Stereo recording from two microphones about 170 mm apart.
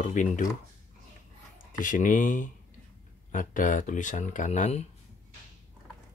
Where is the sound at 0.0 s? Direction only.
50° left (ahead or behind).